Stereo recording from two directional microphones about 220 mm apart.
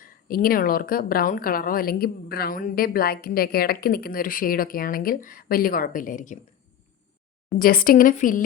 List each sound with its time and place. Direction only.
0.0 s a woman's voice: 40° left (ahead or behind)
7.6 s a woman's voice: 40° left (ahead or behind)